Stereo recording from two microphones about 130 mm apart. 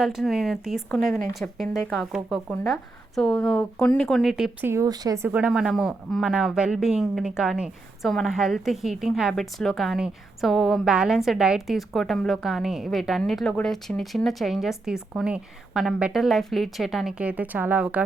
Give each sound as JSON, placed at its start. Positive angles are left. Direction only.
{"t": 0.0, "sound": "speech", "side_deg": 0}
{"t": 4.6, "sound": "speech", "side_deg": -20}
{"t": 5.3, "sound": "speech", "side_deg": -10}